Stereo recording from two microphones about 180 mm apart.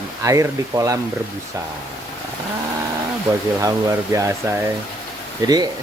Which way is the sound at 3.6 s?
15° right (ahead or behind).